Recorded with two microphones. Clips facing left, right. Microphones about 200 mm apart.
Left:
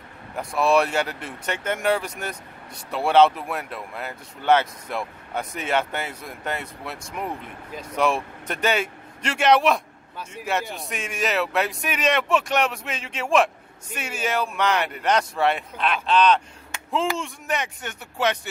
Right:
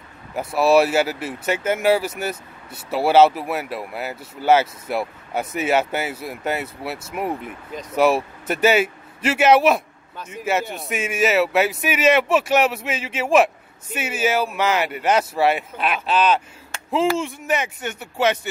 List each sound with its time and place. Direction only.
0.4 s speech: 5° right (ahead or behind)